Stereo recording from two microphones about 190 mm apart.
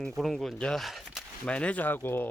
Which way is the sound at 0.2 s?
Centre (ahead or behind).